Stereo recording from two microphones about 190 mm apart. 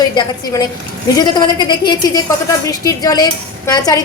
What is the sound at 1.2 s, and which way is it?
A woman's voice, 20° left (ahead or behind).